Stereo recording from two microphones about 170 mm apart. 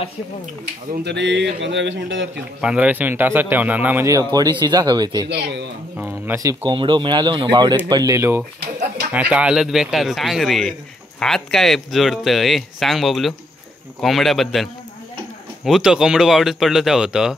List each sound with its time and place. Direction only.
0.9 s speech: 85° right
2.6 s speech: 5° right (ahead or behind); by 5.3 s 25° right (ahead or behind)
5.3 s speech: 90° right
5.9 s speech: 10° right (ahead or behind)